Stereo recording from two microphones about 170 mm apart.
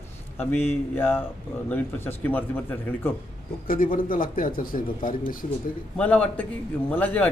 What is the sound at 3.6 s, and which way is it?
Speech, 55° left (ahead or behind).